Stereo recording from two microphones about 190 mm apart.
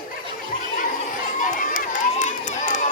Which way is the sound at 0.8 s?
45° left (ahead or behind).